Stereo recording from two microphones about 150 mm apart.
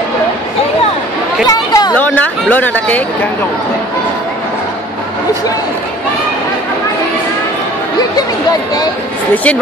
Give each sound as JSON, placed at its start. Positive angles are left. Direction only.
{"t": 1.5, "sound": "chatter", "side_deg": 25}
{"t": 2.0, "sound": "speech", "side_deg": 10}
{"t": 9.3, "sound": "speech", "side_deg": 10}